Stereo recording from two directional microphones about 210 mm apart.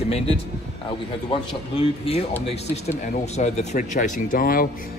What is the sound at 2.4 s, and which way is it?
Speech, 30° left (ahead or behind).